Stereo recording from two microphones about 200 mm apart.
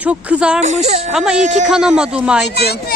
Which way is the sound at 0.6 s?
35° right (ahead or behind).